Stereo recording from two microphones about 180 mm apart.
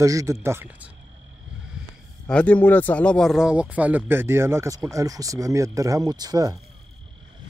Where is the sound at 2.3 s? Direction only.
10° left (ahead or behind); by 6.6 s 20° right (ahead or behind).